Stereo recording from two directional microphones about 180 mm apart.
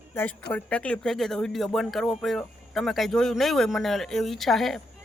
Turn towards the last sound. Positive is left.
turn(degrees=0)  # may be behind; listen again after turning